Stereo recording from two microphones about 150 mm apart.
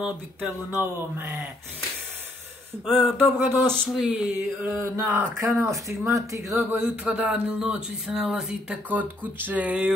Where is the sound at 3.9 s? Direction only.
5° right (ahead or behind).